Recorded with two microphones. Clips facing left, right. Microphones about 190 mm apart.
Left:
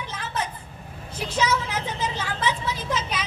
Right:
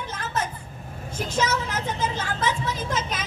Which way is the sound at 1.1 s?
45° right (ahead or behind).